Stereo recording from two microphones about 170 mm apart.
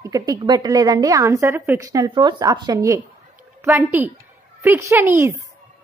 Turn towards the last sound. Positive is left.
turn(degrees=-15)  # may be behind; listen again after turning